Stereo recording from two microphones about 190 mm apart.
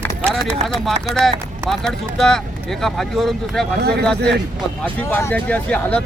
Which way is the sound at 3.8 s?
60° right (ahead or behind).